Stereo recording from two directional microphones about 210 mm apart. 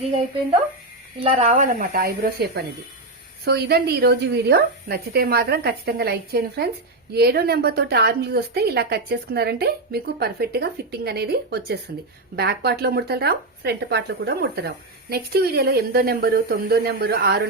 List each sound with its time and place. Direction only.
1.2 s speech: 30° right (ahead or behind); by 17.4 s 50° right (ahead or behind)